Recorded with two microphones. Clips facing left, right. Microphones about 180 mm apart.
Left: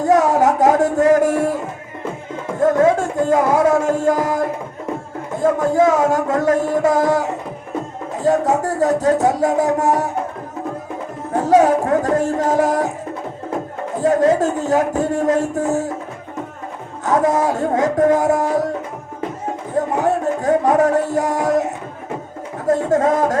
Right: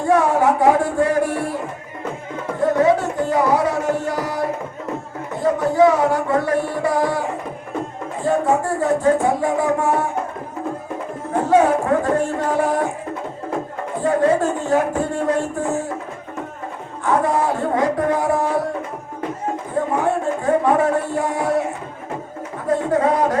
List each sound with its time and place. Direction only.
0.0 s a sound: 40° left (ahead or behind)
2.6 s music: 45° left (ahead or behind)
5.4 s music: 45° left (ahead or behind)
11.4 s music: 40° left (ahead or behind)
14.0 s music: 40° left (ahead or behind)
17.0 s speech: 40° left (ahead or behind)
20.4 s music: 40° left (ahead or behind)
22.6 s a sound: 45° left (ahead or behind)